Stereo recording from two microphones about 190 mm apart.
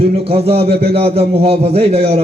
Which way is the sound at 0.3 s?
30° right (ahead or behind).